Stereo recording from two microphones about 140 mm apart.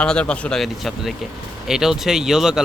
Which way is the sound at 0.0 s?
5° left (ahead or behind).